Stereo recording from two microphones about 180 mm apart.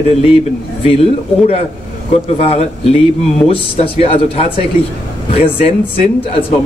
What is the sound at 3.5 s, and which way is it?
Speech, 35° left (ahead or behind).